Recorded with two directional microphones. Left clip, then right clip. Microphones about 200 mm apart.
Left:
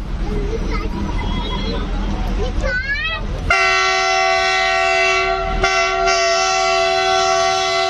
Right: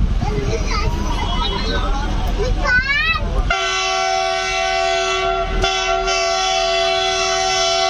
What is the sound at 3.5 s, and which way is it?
Train, 5° right (ahead or behind).